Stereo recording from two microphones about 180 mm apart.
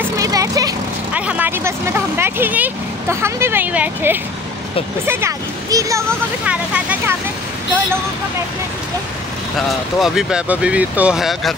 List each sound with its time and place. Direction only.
0.2 s vehicle: 20° right (ahead or behind)
1.1 s vehicle: 5° right (ahead or behind)
5.0 s speech: 15° right (ahead or behind)
9.7 s speech: centre (ahead or behind)